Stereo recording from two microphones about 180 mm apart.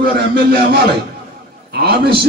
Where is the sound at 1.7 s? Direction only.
60° right (ahead or behind).